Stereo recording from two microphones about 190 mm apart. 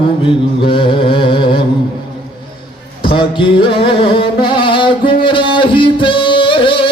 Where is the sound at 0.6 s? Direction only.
30° left (ahead or behind).